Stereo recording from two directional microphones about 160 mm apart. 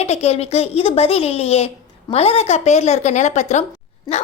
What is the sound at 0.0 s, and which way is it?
A woman's voice, 40° left (ahead or behind).